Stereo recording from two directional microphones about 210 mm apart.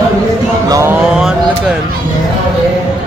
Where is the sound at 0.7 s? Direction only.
10° right (ahead or behind).